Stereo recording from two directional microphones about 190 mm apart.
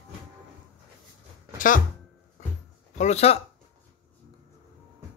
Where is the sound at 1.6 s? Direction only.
45° left (ahead or behind).